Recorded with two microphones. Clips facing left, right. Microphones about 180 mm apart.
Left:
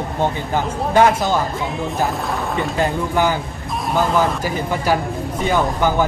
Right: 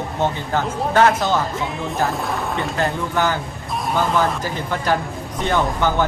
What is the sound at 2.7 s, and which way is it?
Speech, 10° left (ahead or behind).